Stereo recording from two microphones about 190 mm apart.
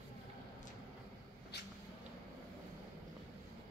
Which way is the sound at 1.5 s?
60° left (ahead or behind).